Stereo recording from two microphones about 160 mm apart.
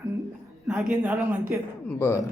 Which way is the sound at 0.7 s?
5° right (ahead or behind).